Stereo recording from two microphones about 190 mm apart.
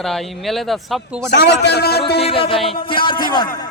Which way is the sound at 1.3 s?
60° left (ahead or behind).